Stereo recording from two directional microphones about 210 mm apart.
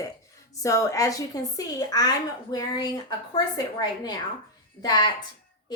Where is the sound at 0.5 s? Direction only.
15° left (ahead or behind).